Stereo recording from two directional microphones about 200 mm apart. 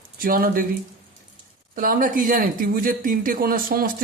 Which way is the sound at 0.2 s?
45° right (ahead or behind).